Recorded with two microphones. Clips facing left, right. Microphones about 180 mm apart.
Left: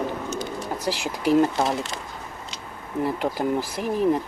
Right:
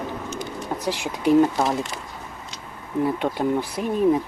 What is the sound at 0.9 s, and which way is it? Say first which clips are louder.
Speech: right 2 dB; 5° left (ahead or behind).